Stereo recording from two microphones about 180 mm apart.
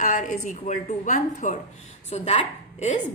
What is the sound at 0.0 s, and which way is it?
A woman's voice, 45° left (ahead or behind).